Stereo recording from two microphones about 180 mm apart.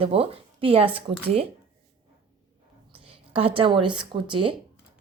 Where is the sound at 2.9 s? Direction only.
30° right (ahead or behind).